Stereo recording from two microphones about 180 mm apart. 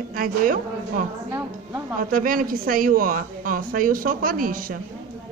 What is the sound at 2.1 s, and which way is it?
A woman's voice, 50° right (ahead or behind).